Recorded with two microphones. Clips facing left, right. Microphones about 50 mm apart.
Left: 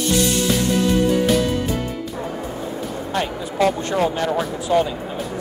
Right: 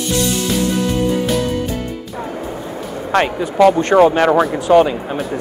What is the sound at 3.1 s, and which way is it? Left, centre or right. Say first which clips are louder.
Speech: right 9 dB; right.